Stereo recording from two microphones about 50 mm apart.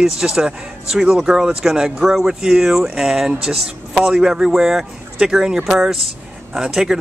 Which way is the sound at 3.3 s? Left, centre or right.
Centre.